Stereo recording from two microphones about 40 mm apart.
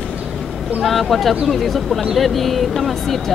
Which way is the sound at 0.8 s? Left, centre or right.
Centre.